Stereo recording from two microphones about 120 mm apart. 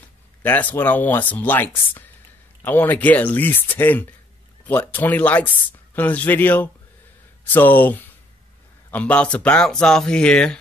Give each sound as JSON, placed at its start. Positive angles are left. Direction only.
{"t": 0.4, "sound": "speech", "side_deg": 15}